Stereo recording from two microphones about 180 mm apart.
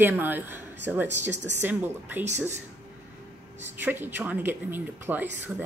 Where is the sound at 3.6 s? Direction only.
10° right (ahead or behind).